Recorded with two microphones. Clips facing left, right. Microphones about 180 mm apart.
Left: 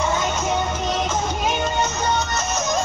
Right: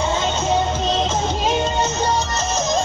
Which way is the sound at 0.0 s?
25° right (ahead or behind).